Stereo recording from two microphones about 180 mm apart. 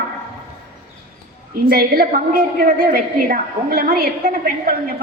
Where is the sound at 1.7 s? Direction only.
55° right (ahead or behind).